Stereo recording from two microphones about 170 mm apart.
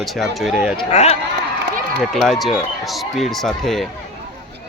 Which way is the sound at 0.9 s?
40° left (ahead or behind).